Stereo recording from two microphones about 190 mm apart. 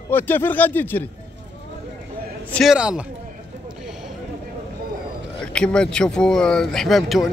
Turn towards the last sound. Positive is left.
turn(degrees=0)  # may be behind; listen again after turning